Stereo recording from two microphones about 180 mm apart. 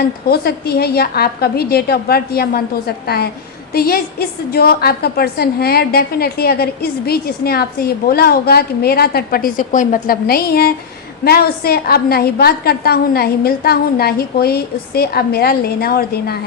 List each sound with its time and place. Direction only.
0.0 s a woman's voice: 60° left (ahead or behind)